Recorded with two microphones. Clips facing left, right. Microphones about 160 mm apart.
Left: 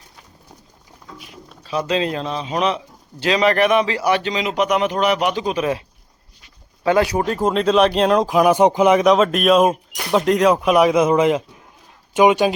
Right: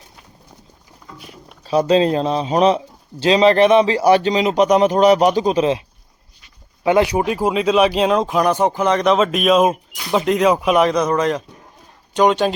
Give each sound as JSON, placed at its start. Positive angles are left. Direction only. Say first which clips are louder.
{"t": 1.6, "sound": "speech", "louder": "right 6 dB", "side_deg": -35}
{"t": 6.8, "sound": "speech", "louder": "right 2 dB", "side_deg": -20}